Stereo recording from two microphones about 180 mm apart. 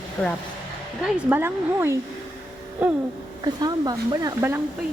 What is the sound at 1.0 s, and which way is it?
Speech, 10° right (ahead or behind).